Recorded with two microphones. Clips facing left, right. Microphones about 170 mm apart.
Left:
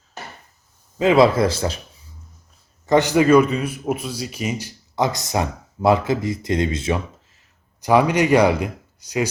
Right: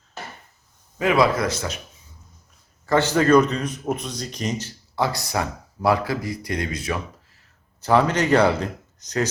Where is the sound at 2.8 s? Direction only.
15° left (ahead or behind).